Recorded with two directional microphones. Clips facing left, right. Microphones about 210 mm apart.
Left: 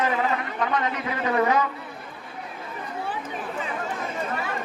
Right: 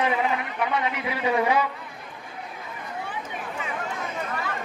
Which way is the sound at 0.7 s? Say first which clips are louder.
Left 1 dB; 10° right (ahead or behind).